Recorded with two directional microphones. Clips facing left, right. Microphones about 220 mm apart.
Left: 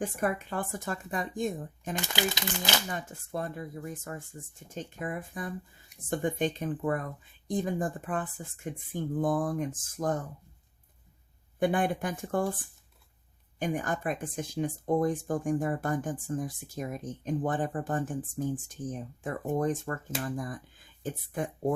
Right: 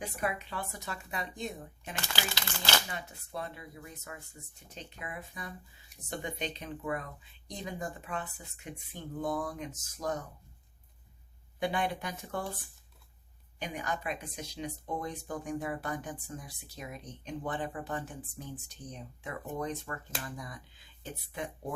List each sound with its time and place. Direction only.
0.0 s speech: 50° left (ahead or behind)
2.0 s speech: 15° left (ahead or behind)
2.9 s speech: 45° left (ahead or behind)
11.6 s speech: 50° left (ahead or behind)
13.6 s speech: 50° left (ahead or behind)